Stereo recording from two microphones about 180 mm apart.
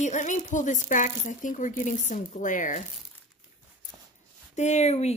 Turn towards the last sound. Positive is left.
turn(degrees=40)  # may be behind; listen again after turning